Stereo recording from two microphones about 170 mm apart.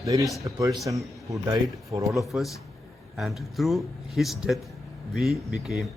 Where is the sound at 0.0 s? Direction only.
20° right (ahead or behind).